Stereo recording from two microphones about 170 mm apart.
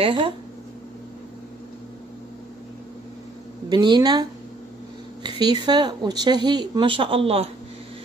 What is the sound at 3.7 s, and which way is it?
A woman's voice, 25° right (ahead or behind).